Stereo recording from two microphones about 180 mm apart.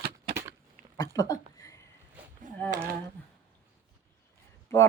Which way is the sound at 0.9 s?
20° left (ahead or behind).